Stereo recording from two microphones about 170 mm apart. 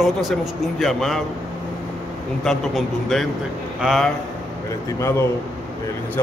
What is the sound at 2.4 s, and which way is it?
Speech, centre (ahead or behind).